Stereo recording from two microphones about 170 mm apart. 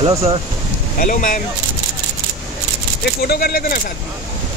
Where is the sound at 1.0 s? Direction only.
50° left (ahead or behind).